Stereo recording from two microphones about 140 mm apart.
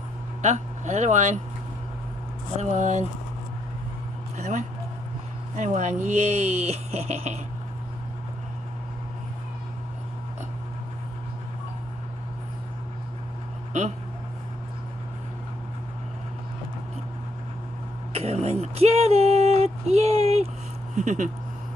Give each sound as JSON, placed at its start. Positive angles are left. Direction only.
{"t": 0.4, "sound": "speech", "side_deg": -55}
{"t": 2.7, "sound": "speech", "side_deg": -60}
{"t": 4.4, "sound": "speech", "side_deg": -55}
{"t": 18.1, "sound": "speech", "side_deg": -50}
{"t": 20.9, "sound": "speech", "side_deg": -60}